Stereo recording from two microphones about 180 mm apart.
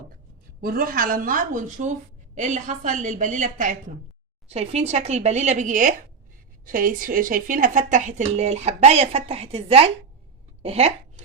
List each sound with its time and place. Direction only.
0.6 s a woman's voice: 55° right (ahead or behind)
4.4 s speech: 35° right (ahead or behind)